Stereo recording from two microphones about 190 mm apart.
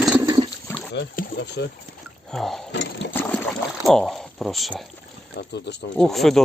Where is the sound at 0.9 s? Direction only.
60° left (ahead or behind).